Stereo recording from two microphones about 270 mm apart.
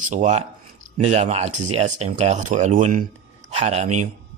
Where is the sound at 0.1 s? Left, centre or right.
Right.